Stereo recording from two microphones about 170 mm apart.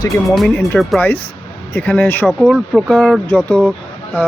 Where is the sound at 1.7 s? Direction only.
10° left (ahead or behind).